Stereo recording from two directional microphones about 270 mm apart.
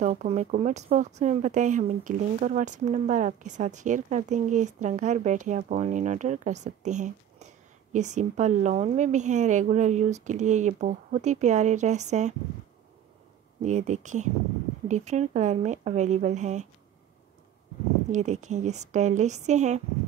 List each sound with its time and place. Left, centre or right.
0.0 s speech: right
13.6 s speech: right
18.1 s speech: right